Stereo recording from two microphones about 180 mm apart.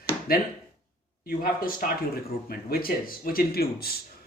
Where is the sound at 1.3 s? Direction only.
55° left (ahead or behind).